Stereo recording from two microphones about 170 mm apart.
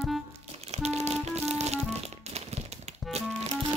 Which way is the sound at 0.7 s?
40° right (ahead or behind).